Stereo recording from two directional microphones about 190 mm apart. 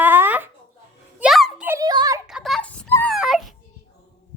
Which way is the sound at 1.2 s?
Centre (ahead or behind).